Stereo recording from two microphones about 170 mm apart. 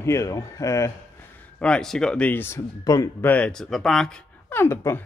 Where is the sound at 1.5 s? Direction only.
5° left (ahead or behind).